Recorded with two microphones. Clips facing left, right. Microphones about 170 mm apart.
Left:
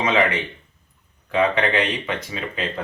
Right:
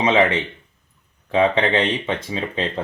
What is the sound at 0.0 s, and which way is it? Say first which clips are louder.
Speech: right 3 dB; 25° right (ahead or behind).